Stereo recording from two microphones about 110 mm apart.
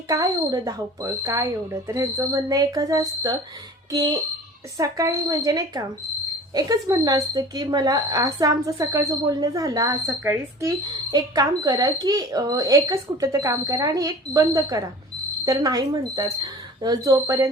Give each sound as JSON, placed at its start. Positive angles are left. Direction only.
{"t": 0.1, "sound": "speech", "side_deg": -30}
{"t": 11.1, "sound": "speech", "side_deg": -35}